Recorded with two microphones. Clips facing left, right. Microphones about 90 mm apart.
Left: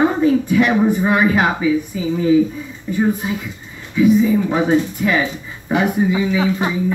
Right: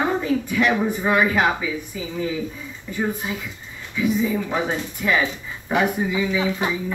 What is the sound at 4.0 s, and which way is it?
Speech, 20° left (ahead or behind).